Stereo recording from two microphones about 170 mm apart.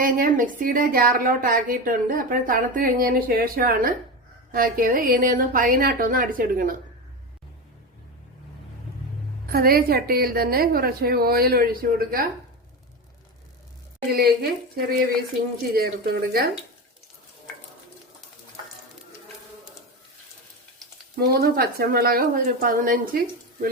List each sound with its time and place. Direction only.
0.0 s a woman's voice: 50° right (ahead or behind)
9.5 s a woman's voice: 60° right (ahead or behind)
14.1 s a woman's voice: 65° right (ahead or behind)
21.2 s a woman's voice: 65° right (ahead or behind)